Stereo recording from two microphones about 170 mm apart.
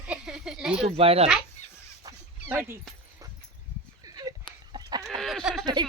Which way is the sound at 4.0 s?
20° right (ahead or behind).